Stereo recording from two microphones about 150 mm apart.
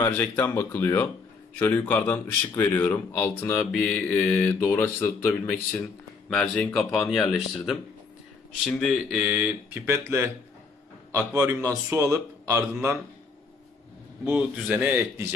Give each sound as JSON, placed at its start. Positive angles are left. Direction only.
{"t": 0.1, "sound": "speech", "side_deg": 10}
{"t": 6.3, "sound": "a man's voice", "side_deg": 5}
{"t": 14.2, "sound": "a man's voice", "side_deg": -10}